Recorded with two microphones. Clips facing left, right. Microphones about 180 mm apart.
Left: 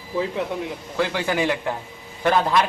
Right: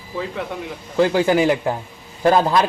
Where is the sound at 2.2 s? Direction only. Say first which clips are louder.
Right 4 dB; 35° right (ahead or behind).